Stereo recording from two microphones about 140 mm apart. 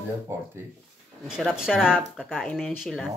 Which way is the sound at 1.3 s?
5° right (ahead or behind).